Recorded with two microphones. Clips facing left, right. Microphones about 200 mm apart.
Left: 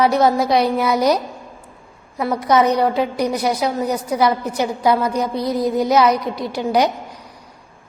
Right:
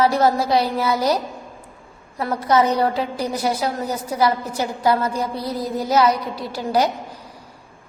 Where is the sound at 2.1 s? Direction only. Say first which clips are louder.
Left 2 dB; 15° left (ahead or behind).